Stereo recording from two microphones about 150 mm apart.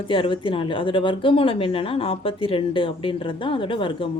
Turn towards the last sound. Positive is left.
turn(degrees=35)  # may be behind; listen again after turning